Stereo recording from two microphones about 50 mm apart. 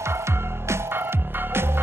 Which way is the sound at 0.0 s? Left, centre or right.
Right.